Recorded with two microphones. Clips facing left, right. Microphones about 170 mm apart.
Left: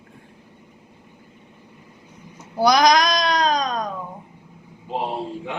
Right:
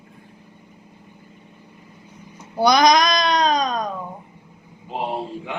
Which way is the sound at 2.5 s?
Centre (ahead or behind).